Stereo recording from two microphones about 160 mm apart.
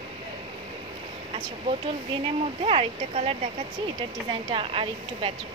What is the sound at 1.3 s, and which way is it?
Speech, 35° right (ahead or behind).